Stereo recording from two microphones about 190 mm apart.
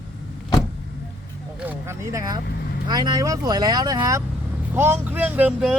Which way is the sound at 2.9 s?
20° right (ahead or behind).